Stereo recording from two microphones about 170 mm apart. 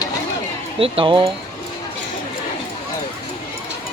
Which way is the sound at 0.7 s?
35° right (ahead or behind).